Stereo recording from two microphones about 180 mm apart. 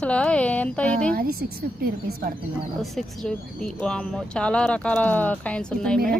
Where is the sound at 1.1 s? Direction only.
55° right (ahead or behind).